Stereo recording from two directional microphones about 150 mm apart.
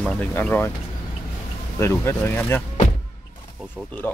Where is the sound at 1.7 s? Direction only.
15° left (ahead or behind).